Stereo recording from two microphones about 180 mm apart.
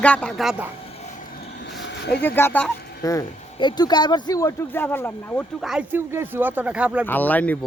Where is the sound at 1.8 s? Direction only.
75° left (ahead or behind).